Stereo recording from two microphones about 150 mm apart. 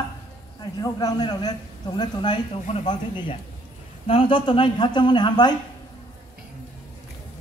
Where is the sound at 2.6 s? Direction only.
45° left (ahead or behind).